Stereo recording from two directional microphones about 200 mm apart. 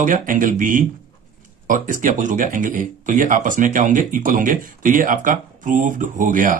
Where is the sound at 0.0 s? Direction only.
40° right (ahead or behind).